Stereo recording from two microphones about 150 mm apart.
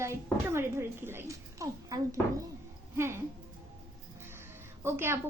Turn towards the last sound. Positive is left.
turn(degrees=-15)  # may be behind; listen again after turning